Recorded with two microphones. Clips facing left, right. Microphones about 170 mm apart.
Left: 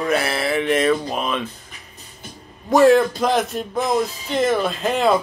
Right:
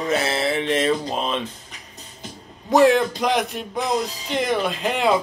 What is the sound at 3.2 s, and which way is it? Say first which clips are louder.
Speech: left 2 dB; 15° right (ahead or behind).